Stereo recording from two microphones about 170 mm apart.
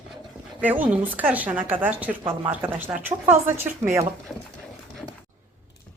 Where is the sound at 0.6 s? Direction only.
10° right (ahead or behind).